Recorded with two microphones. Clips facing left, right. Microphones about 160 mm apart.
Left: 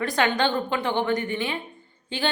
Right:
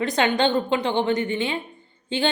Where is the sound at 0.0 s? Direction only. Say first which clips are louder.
Right 2 dB; 20° right (ahead or behind).